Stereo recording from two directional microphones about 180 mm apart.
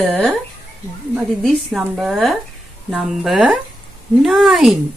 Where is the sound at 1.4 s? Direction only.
Centre (ahead or behind).